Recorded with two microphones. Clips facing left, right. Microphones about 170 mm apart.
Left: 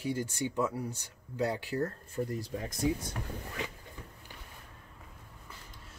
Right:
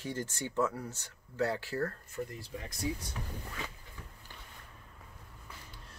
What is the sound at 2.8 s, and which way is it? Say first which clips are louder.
Speech: left 6 dB; 50° left (ahead or behind).